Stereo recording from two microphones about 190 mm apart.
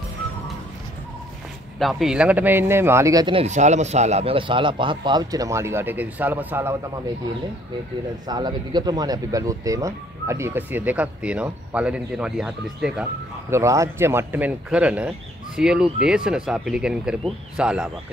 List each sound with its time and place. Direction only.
1.8 s speech: centre (ahead or behind); by 3.4 s 20° right (ahead or behind)
3.4 s a man's voice: 40° right (ahead or behind); by 6.7 s 10° right (ahead or behind)
8.3 s speech: 20° right (ahead or behind); by 13.0 s 5° right (ahead or behind)
13.5 s a man's voice: 15° right (ahead or behind)